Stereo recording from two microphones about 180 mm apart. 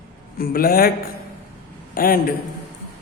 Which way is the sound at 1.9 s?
55° left (ahead or behind).